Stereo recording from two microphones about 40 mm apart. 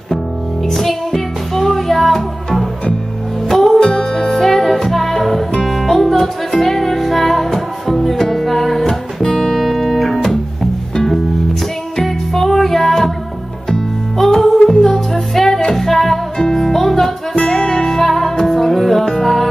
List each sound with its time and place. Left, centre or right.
0.7 s music: centre
3.8 s music: centre
9.2 s music: centre
9.6 s music: centre
10.2 s music: centre
17.4 s music: centre